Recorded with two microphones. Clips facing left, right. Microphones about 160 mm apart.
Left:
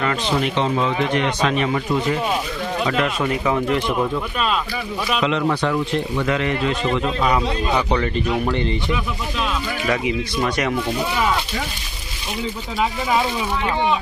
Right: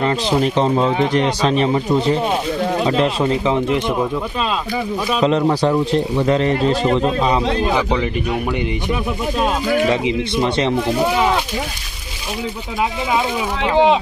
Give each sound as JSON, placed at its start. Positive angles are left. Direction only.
{"t": 0.0, "sound": "speech", "side_deg": -35}
{"t": 5.2, "sound": "speech", "side_deg": -35}
{"t": 7.9, "sound": "speech", "side_deg": -10}
{"t": 9.4, "sound": "speech", "side_deg": -50}
{"t": 9.8, "sound": "speech", "side_deg": -25}
{"t": 13.6, "sound": "speech", "side_deg": -90}